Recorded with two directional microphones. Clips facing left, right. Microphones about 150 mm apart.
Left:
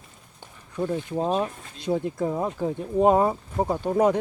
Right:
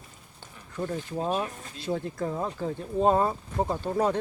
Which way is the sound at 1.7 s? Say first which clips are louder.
Left 5 dB; 15° left (ahead or behind).